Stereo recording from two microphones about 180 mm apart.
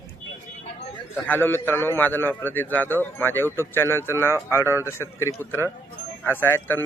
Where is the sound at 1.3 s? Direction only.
10° left (ahead or behind).